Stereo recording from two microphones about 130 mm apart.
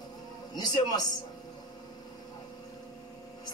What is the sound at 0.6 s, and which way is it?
Speech, 30° left (ahead or behind).